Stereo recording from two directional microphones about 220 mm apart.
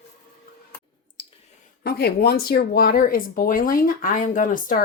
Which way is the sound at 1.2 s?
20° left (ahead or behind).